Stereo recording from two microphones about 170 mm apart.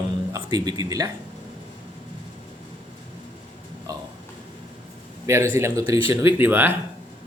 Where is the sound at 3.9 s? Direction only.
20° right (ahead or behind).